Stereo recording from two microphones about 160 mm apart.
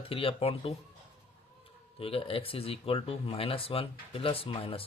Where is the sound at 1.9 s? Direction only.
35° left (ahead or behind).